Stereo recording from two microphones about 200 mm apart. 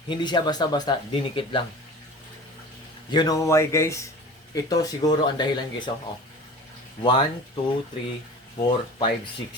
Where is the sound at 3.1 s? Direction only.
20° left (ahead or behind).